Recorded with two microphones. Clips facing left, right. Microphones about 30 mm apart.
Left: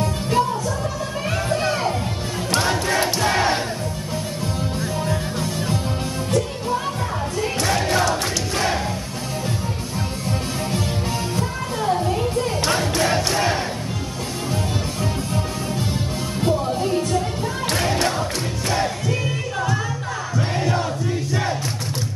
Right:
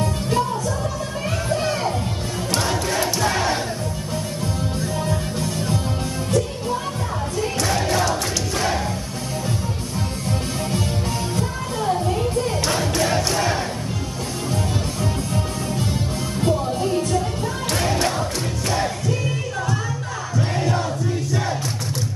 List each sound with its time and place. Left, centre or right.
0.0 s music: centre
2.5 s crowd: centre
4.9 s music: centre
7.4 s crowd: centre
11.3 s music: centre
12.5 s crowd: centre
16.3 s music: centre
20.3 s crowd: centre